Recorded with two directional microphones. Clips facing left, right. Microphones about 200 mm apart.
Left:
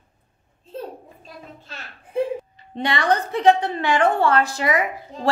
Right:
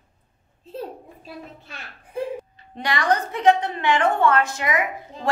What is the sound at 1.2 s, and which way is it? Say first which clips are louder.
Speech: right 4 dB; 10° right (ahead or behind).